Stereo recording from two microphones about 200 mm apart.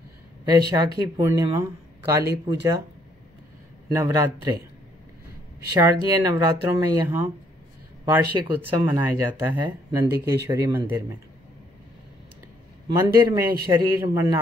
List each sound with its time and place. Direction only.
0.5 s speech: 20° right (ahead or behind)
3.9 s speech: 15° right (ahead or behind)
5.7 s speech: 15° right (ahead or behind)
12.8 s speech: 15° right (ahead or behind)